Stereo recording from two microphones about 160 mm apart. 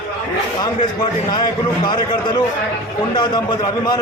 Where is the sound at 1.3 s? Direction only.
30° left (ahead or behind).